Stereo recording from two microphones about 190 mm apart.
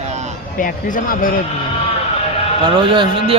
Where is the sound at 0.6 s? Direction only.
45° left (ahead or behind).